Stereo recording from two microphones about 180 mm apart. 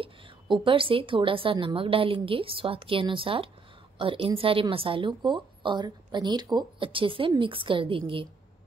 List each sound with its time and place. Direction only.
0.0 s a woman's voice: 30° right (ahead or behind)